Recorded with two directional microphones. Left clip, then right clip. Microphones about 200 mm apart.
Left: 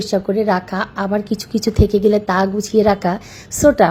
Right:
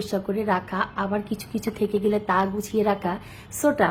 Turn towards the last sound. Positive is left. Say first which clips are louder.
# left 9 dB
turn(degrees=20)  # may be behind; listen again after turning